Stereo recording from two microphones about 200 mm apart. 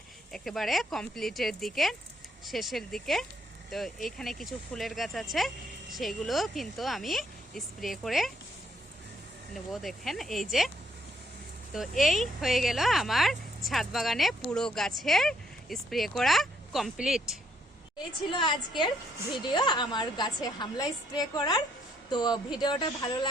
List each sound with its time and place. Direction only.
0.3 s speech: centre (ahead or behind)
9.8 s speech: centre (ahead or behind)
11.7 s speech: centre (ahead or behind)
18.3 s a woman's voice: 25° left (ahead or behind)